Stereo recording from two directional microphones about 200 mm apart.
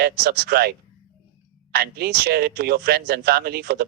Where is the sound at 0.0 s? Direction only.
50° right (ahead or behind).